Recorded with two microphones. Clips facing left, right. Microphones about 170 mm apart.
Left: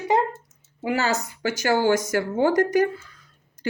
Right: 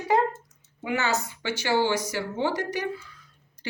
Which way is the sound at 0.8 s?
35° left (ahead or behind).